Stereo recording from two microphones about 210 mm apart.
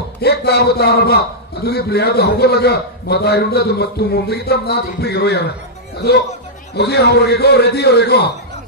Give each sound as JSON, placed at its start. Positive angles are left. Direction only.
{"t": 0.2, "sound": "a man's voice", "side_deg": 50}